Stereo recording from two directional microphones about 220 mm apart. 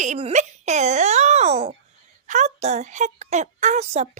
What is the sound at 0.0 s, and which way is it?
A woman's voice, 30° right (ahead or behind).